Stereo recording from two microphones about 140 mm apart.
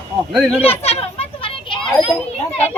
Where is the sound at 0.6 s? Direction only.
45° left (ahead or behind).